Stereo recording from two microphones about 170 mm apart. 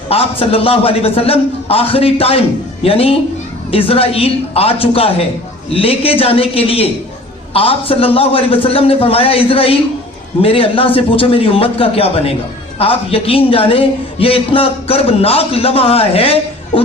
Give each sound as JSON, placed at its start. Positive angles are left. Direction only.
{"t": 0.1, "sound": "a man's voice", "side_deg": 35}